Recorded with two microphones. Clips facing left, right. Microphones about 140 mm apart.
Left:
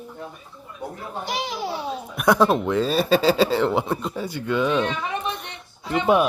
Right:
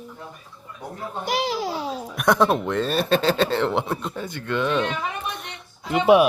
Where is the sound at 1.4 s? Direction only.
35° right (ahead or behind).